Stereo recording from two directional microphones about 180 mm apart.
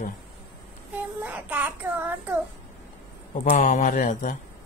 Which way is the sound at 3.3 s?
45° left (ahead or behind).